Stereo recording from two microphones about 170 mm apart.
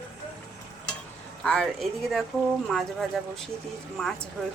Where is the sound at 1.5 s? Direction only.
Centre (ahead or behind).